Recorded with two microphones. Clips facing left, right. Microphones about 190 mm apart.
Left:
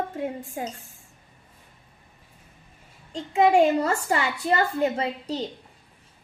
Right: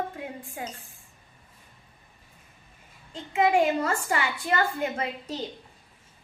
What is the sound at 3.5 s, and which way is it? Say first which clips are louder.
A woman's voice: left 4 dB; 35° left (ahead or behind).